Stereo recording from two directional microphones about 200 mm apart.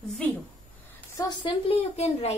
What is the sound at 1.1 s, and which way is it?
A woman's voice, 20° left (ahead or behind).